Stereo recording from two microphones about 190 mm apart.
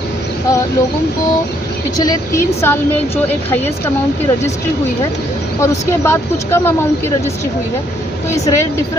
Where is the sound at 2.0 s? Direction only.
15° left (ahead or behind).